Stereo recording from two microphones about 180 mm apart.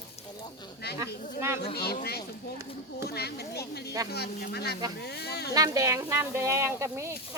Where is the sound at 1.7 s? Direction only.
60° left (ahead or behind).